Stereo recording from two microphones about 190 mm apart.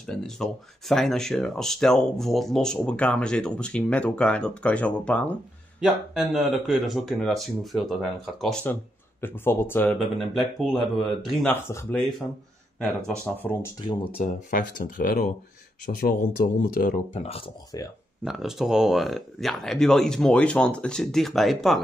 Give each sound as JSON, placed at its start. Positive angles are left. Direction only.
{"t": 0.0, "sound": "speech", "side_deg": 0}
{"t": 13.2, "sound": "speech", "side_deg": 10}
{"t": 13.8, "sound": "speech", "side_deg": 30}
{"t": 14.5, "sound": "speech", "side_deg": 45}
{"t": 17.1, "sound": "speech", "side_deg": 30}
{"t": 17.7, "sound": "speech", "side_deg": 20}
{"t": 18.2, "sound": "speech", "side_deg": 0}